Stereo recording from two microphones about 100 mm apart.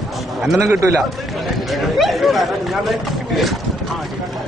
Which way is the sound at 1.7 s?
Centre (ahead or behind).